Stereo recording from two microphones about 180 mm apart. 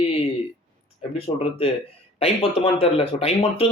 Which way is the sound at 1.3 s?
30° left (ahead or behind).